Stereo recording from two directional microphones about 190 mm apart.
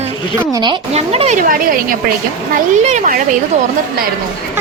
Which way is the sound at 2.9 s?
40° right (ahead or behind).